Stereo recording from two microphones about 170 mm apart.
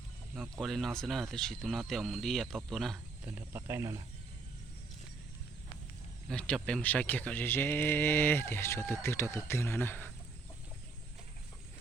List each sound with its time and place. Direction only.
0.5 s speech: centre (ahead or behind)
3.2 s speech: 15° right (ahead or behind)
6.2 s speech: 5° left (ahead or behind)